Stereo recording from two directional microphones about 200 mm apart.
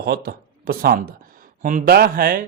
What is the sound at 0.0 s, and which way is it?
A man's voice, 50° right (ahead or behind).